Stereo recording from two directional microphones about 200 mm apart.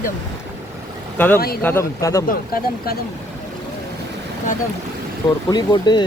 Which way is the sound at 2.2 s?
45° left (ahead or behind).